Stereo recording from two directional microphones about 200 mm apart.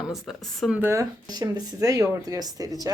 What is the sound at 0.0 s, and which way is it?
Speech, centre (ahead or behind).